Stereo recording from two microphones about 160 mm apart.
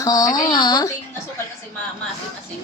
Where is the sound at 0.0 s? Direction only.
25° left (ahead or behind).